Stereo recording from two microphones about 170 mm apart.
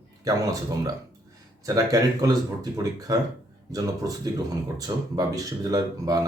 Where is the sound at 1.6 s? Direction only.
20° right (ahead or behind).